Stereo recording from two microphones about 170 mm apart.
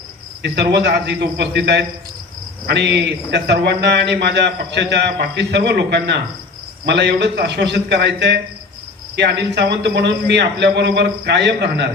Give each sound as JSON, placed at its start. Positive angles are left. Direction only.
{"t": 0.4, "sound": "a man's voice", "side_deg": -85}